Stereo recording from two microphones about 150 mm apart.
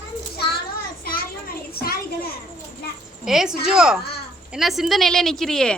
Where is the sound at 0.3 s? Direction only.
85° left.